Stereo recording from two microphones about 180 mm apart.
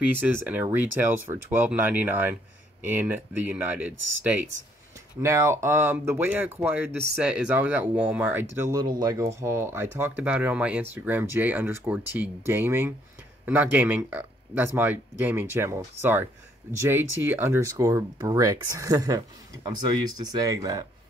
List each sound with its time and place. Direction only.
0.0 s speech: 10° right (ahead or behind)